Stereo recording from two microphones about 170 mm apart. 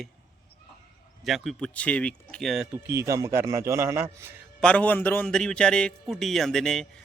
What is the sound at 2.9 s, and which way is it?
A man's voice, 15° right (ahead or behind).